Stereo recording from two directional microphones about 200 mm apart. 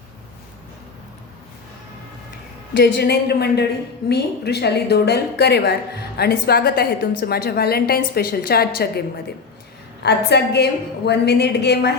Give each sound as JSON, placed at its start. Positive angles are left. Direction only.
{"t": 2.8, "sound": "a woman's voice", "side_deg": 55}